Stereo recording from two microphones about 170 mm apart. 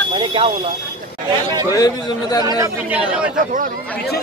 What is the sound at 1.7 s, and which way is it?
Speech, 20° left (ahead or behind).